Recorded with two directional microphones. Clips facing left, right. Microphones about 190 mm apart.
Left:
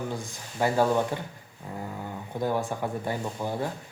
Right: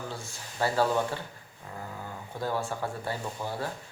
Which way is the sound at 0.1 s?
15° left (ahead or behind).